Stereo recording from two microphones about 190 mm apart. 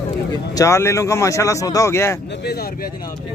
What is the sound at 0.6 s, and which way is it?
Speech, 15° left (ahead or behind).